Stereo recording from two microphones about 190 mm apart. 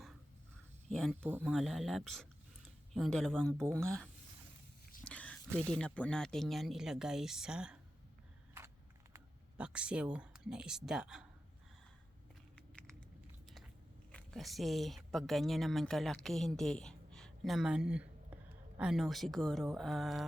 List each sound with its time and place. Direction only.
0.9 s speech: 5° left (ahead or behind)
5.0 s a sound: 5° left (ahead or behind)
5.6 s speech: 5° left (ahead or behind)
9.1 s speech: 5° right (ahead or behind)
14.1 s speech: 5° left (ahead or behind)